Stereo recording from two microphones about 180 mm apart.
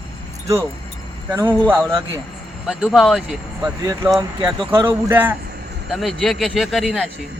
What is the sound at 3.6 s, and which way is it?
Speech, 20° right (ahead or behind).